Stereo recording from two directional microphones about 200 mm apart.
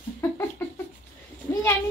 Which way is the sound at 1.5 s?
15° left (ahead or behind).